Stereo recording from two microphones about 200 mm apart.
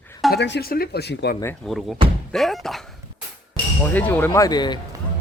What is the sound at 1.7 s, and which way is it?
Speech, centre (ahead or behind).